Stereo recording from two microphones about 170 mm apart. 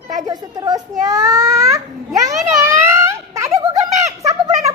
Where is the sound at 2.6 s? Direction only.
15° right (ahead or behind).